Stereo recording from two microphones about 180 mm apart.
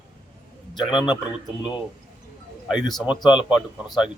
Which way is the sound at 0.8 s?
5° right (ahead or behind).